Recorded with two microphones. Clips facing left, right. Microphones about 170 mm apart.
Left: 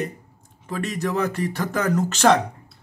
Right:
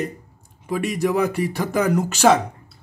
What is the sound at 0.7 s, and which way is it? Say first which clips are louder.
Speech: right 4 dB; 10° right (ahead or behind).